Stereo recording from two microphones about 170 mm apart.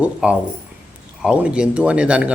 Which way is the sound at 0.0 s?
5° right (ahead or behind).